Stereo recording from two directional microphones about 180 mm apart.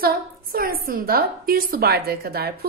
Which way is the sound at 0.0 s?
55° right (ahead or behind).